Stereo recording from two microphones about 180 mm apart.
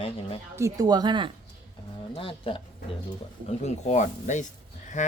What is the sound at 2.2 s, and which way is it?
Speech, 30° left (ahead or behind).